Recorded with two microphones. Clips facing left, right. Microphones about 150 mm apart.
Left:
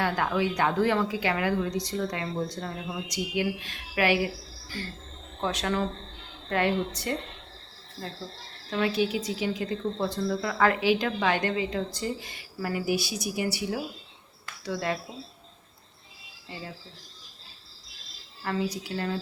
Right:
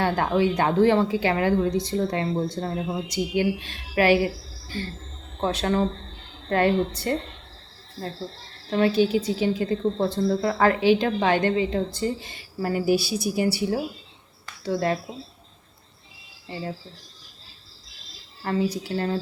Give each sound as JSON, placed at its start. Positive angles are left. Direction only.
{"t": 0.0, "sound": "a woman's voice", "side_deg": -30}
{"t": 8.7, "sound": "a woman's voice", "side_deg": -30}
{"t": 18.4, "sound": "a woman's voice", "side_deg": -30}